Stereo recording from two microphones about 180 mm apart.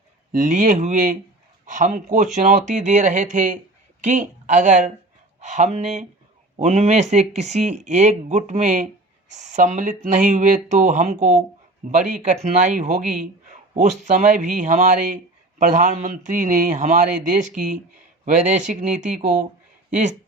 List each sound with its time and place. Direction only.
0.3 s speech: 45° right (ahead or behind)